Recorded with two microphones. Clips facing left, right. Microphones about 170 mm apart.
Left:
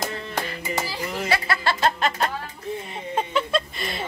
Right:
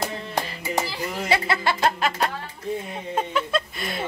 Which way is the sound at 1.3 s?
20° right (ahead or behind).